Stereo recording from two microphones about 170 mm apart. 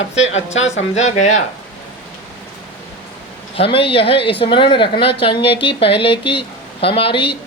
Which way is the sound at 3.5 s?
35° left (ahead or behind).